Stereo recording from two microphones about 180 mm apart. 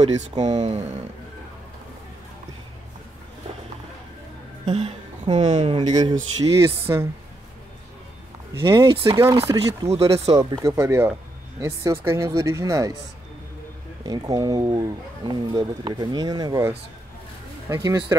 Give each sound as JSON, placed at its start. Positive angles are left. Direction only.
{"t": 0.5, "sound": "speech", "side_deg": -25}
{"t": 4.6, "sound": "speech", "side_deg": -30}
{"t": 6.4, "sound": "speech", "side_deg": -15}
{"t": 8.5, "sound": "speech", "side_deg": -30}
{"t": 9.8, "sound": "speech", "side_deg": -35}
{"t": 10.3, "sound": "speech", "side_deg": -25}
{"t": 14.0, "sound": "speech", "side_deg": -20}